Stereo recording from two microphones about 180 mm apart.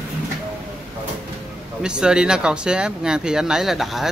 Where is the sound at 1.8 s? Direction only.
5° right (ahead or behind).